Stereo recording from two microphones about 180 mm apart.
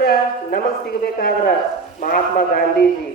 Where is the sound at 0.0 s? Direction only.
60° left (ahead or behind).